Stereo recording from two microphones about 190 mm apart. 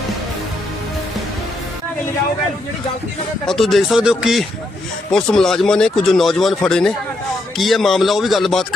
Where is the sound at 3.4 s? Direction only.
Centre (ahead or behind).